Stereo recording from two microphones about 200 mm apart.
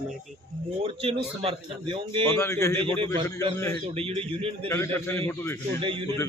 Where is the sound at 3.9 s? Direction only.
30° right (ahead or behind).